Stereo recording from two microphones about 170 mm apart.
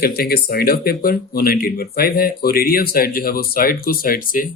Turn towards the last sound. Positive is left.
turn(degrees=55)  # may be behind; listen again after turning